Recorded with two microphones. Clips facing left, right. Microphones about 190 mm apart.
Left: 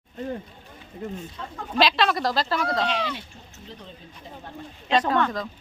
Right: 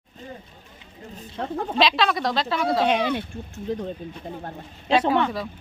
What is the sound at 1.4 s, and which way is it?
Speech, 65° right (ahead or behind).